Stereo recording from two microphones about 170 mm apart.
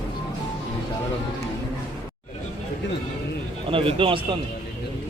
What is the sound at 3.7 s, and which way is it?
Speech, 30° right (ahead or behind).